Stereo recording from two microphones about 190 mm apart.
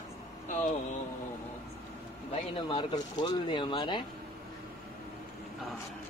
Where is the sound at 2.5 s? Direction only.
25° left (ahead or behind).